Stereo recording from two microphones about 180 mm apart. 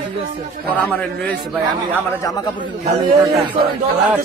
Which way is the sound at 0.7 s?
10° left (ahead or behind).